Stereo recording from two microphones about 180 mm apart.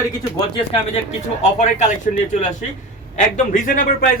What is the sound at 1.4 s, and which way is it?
Speech, 40° left (ahead or behind).